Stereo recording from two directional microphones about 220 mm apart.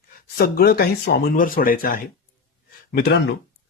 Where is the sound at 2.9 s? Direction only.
55° left (ahead or behind).